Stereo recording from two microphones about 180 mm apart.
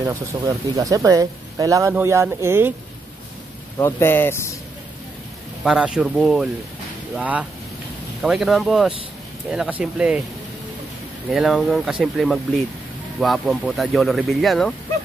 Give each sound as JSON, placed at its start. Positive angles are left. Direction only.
{"t": 0.0, "sound": "speech", "side_deg": -15}
{"t": 3.7, "sound": "speech", "side_deg": 10}
{"t": 5.6, "sound": "speech", "side_deg": -5}
{"t": 11.2, "sound": "speech", "side_deg": 0}